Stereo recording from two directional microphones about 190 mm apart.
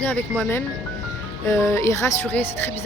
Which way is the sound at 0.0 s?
10° left (ahead or behind).